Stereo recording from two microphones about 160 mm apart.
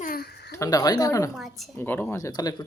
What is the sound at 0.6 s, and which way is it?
Speech, 20° left (ahead or behind).